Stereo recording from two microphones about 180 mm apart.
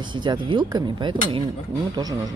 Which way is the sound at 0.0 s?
25° right (ahead or behind).